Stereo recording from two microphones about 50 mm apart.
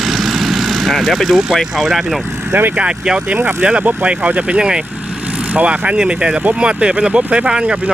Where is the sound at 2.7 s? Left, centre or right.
Right.